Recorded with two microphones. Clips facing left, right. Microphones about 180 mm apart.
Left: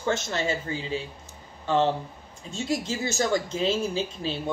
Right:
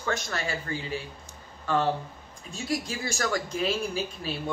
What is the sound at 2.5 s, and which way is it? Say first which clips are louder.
Speech: left 3 dB; 25° left (ahead or behind).